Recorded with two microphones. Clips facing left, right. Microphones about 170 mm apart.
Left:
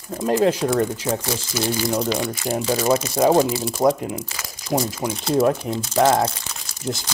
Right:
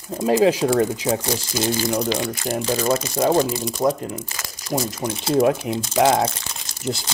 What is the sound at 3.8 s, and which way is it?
Speech, 25° left (ahead or behind).